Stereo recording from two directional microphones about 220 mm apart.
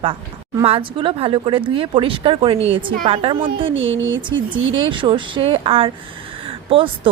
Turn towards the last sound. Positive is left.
turn(degrees=-25)  # may be behind; listen again after turning